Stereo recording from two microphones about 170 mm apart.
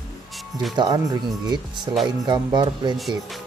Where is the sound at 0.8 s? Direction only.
25° right (ahead or behind).